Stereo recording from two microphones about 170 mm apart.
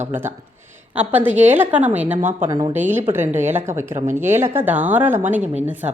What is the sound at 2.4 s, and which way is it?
Speech, 20° right (ahead or behind).